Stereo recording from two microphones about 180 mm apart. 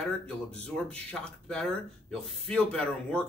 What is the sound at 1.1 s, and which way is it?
Speech, 5° left (ahead or behind).